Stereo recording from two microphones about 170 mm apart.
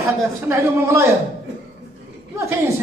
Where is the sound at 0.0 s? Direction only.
15° right (ahead or behind).